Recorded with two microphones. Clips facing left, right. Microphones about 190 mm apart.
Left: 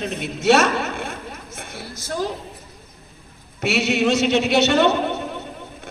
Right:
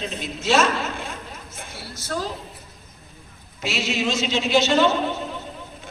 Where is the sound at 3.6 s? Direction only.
65° left (ahead or behind).